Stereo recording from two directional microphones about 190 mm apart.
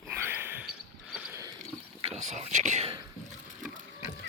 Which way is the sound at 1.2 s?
10° right (ahead or behind).